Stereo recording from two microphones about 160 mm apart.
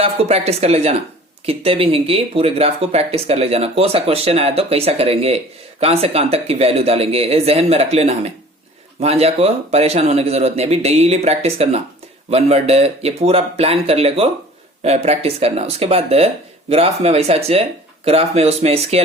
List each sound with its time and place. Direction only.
0.0 s speech: 40° right (ahead or behind)